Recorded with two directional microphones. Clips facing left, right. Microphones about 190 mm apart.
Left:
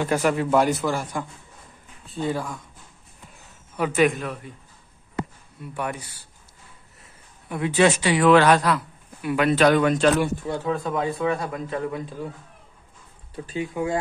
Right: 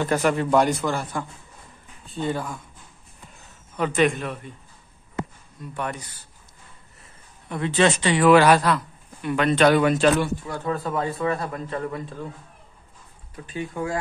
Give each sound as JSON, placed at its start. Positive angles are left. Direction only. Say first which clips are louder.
{"t": 0.0, "sound": "a man's voice", "louder": "even", "side_deg": 5}
{"t": 3.7, "sound": "speech", "louder": "left 1 dB", "side_deg": 10}
{"t": 5.6, "sound": "speech", "louder": "left 1 dB", "side_deg": 10}
{"t": 7.4, "sound": "speech", "louder": "left 1 dB", "side_deg": 10}
{"t": 8.3, "sound": "a woman's voice", "louder": "right 1 dB", "side_deg": -10}
{"t": 8.6, "sound": "a man's voice", "louder": "even", "side_deg": 5}
{"t": 13.6, "sound": "speech", "louder": "left 2 dB", "side_deg": 15}